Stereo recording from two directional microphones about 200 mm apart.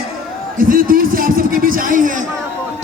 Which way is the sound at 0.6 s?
45° right (ahead or behind).